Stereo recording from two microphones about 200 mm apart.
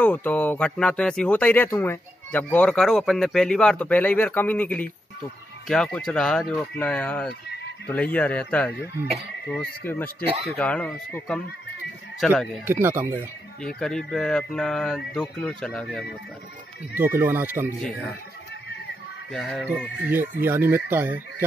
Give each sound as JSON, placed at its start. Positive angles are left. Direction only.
{"t": 0.0, "sound": "speech", "side_deg": 10}
{"t": 12.6, "sound": "speech", "side_deg": -10}
{"t": 13.7, "sound": "speech", "side_deg": 5}
{"t": 16.9, "sound": "speech", "side_deg": -10}
{"t": 19.3, "sound": "speech", "side_deg": 0}